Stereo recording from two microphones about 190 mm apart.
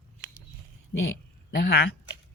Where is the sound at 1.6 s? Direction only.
60° left (ahead or behind).